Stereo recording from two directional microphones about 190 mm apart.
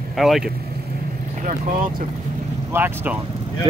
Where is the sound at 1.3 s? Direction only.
40° right (ahead or behind).